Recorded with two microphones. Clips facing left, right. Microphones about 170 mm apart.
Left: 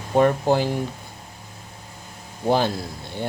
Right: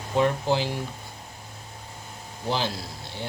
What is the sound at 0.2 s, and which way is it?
Speech, 50° left (ahead or behind).